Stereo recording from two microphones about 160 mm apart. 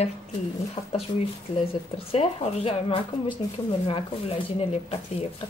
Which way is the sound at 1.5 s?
35° left (ahead or behind).